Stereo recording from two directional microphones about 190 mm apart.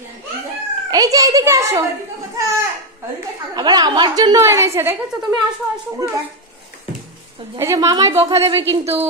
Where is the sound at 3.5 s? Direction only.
20° right (ahead or behind).